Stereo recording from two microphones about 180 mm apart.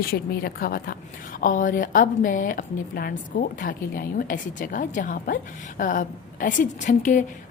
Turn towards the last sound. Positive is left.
turn(degrees=45)  # may be behind; listen again after turning